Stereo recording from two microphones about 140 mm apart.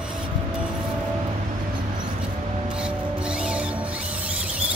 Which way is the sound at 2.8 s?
5° right (ahead or behind).